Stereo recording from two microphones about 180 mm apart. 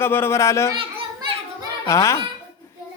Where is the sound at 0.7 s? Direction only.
30° right (ahead or behind).